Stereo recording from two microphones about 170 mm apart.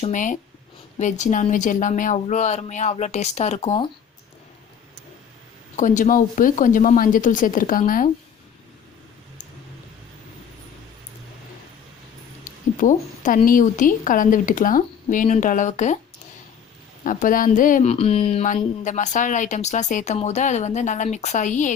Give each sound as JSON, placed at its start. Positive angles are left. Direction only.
{"t": 0.0, "sound": "a woman's voice", "side_deg": 50}
{"t": 5.7, "sound": "a woman's voice", "side_deg": 50}
{"t": 12.5, "sound": "a woman's voice", "side_deg": 50}
{"t": 17.0, "sound": "a woman's voice", "side_deg": 50}
{"t": 17.9, "sound": "a woman's voice", "side_deg": 35}